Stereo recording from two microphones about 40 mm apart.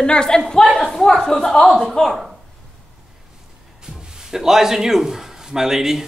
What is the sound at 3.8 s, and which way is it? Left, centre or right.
A man's voice, centre.